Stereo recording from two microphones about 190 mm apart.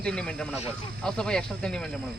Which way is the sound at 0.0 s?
5° left (ahead or behind).